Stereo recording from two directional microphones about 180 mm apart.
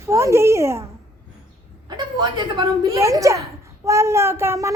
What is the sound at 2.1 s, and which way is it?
A child's voice, 20° right (ahead or behind).